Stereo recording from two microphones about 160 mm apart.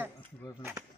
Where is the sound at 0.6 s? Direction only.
15° right (ahead or behind).